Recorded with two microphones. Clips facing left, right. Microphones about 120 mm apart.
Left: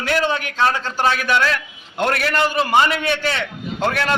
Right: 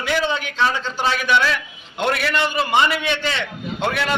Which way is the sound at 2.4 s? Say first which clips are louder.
Left 3 dB; 5° left (ahead or behind).